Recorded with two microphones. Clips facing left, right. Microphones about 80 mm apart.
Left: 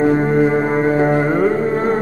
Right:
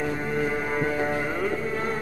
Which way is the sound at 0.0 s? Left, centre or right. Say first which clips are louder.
Left 13 dB; left.